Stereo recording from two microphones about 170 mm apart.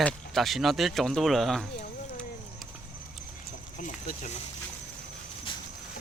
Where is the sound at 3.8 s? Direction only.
50° left (ahead or behind).